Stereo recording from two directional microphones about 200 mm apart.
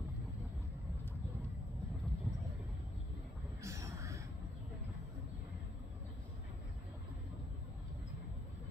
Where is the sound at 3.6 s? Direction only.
15° right (ahead or behind).